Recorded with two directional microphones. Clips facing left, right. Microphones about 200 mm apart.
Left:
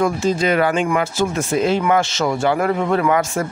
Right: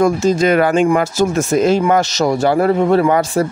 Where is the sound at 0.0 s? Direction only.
45° right (ahead or behind).